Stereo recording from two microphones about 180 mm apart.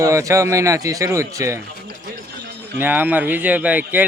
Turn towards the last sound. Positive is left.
turn(degrees=-10)  # may be behind; listen again after turning